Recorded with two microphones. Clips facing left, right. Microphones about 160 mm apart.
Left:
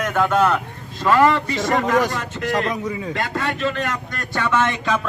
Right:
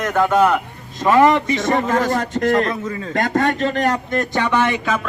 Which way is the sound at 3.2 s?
40° right (ahead or behind).